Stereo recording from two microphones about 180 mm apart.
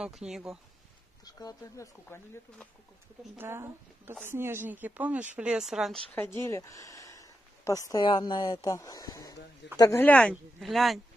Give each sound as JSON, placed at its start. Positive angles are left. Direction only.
{"t": 0.0, "sound": "speech", "side_deg": 0}
{"t": 1.2, "sound": "speech", "side_deg": 20}
{"t": 3.3, "sound": "speech", "side_deg": -15}
{"t": 6.1, "sound": "speech", "side_deg": 15}